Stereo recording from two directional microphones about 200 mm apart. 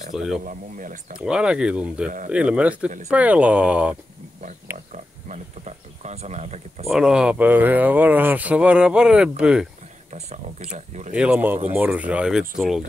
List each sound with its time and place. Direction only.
0.1 s speech: centre (ahead or behind)
0.5 s speech: 40° right (ahead or behind)
1.1 s speech: 5° right (ahead or behind)
2.0 s speech: 40° right (ahead or behind)
2.3 s speech: 5° right (ahead or behind)
4.9 s speech: 35° right (ahead or behind)
6.9 s speech: 5° right (ahead or behind)
10.1 s speech: 35° right (ahead or behind)
11.1 s speech: 5° right (ahead or behind)